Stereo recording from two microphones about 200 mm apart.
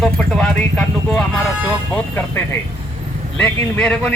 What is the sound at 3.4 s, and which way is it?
Speech, 5° left (ahead or behind).